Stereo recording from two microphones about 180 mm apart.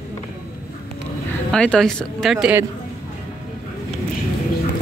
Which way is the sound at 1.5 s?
5° left (ahead or behind).